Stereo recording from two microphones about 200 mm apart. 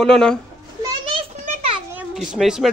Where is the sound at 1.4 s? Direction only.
35° right (ahead or behind).